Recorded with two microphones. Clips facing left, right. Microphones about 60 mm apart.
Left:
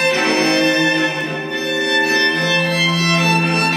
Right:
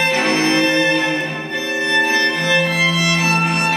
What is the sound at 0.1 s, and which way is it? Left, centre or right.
Music, centre.